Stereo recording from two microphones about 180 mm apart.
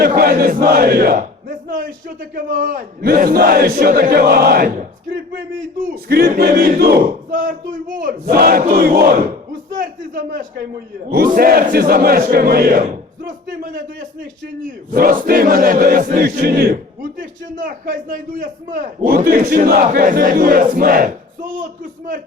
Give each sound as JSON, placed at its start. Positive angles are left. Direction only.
{"t": 0.0, "sound": "battle cry", "side_deg": -55}
{"t": 14.8, "sound": "battle cry", "side_deg": -50}
{"t": 17.2, "sound": "a man's voice", "side_deg": -50}